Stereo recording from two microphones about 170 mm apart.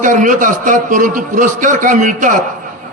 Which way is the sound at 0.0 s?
50° right (ahead or behind).